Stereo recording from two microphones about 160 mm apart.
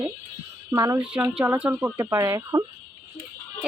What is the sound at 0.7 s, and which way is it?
Speech, 15° right (ahead or behind).